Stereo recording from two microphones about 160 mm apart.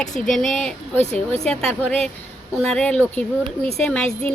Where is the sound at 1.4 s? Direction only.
5° left (ahead or behind).